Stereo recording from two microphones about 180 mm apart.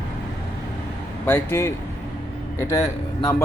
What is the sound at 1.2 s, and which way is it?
Speech, 15° left (ahead or behind).